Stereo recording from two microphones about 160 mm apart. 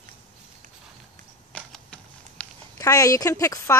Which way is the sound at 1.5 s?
5° left (ahead or behind).